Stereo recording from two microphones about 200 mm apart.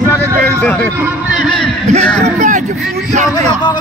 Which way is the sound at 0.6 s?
5° left (ahead or behind).